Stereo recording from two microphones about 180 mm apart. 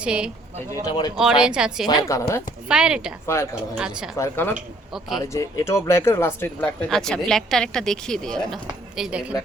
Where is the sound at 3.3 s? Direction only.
15° left (ahead or behind).